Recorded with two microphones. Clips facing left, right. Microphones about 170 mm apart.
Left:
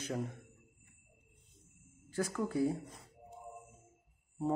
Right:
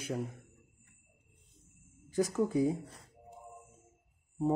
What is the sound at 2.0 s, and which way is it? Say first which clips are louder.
Speech: right 5 dB; 15° right (ahead or behind).